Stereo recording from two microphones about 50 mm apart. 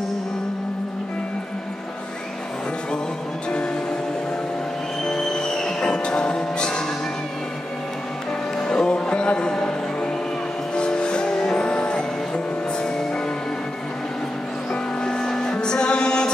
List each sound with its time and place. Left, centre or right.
5.0 s music: centre
8.5 s music: centre
14.7 s music: centre